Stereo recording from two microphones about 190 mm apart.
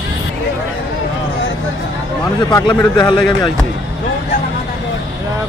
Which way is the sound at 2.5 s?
20° left (ahead or behind).